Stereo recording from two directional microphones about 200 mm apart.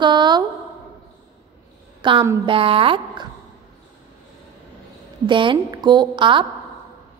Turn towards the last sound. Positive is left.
turn(degrees=-25)  # may be behind; listen again after turning